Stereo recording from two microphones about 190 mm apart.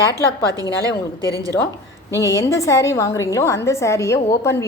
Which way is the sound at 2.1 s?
15° left (ahead or behind).